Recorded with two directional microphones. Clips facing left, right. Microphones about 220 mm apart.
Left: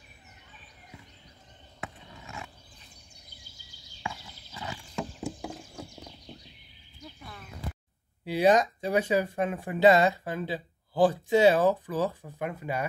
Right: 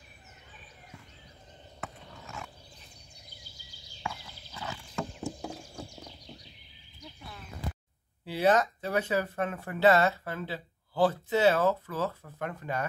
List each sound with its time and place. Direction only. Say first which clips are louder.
2.2 s a sound: left 1 dB; centre (ahead or behind)
4.1 s horse: even; 10° left (ahead or behind)
8.3 s speech: left 3 dB; 15° left (ahead or behind)